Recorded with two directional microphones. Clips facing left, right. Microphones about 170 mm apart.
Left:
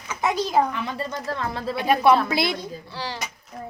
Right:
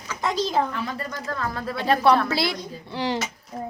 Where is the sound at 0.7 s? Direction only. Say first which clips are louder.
Left 1 dB; 25° left (ahead or behind).